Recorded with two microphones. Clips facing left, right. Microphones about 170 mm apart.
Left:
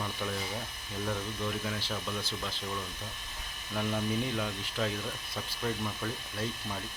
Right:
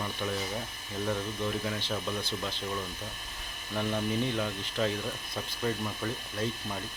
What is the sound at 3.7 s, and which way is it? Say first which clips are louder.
Ratchet: right 1 dB; centre (ahead or behind).